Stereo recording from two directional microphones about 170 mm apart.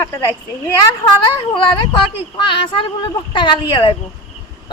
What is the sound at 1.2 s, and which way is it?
Speech, 30° left (ahead or behind).